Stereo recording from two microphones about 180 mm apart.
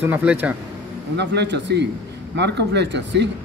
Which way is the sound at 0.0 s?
10° right (ahead or behind).